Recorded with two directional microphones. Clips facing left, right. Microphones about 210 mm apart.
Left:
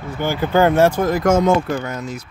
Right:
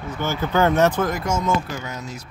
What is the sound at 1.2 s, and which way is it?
Speech, 80° left.